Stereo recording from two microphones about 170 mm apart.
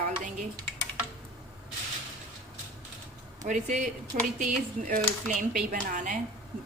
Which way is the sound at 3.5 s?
45° right (ahead or behind).